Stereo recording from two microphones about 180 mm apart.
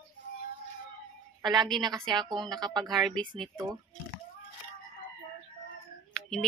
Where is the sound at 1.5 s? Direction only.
25° right (ahead or behind).